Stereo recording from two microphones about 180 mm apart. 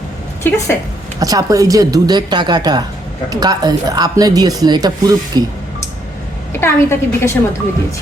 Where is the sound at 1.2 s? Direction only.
20° right (ahead or behind).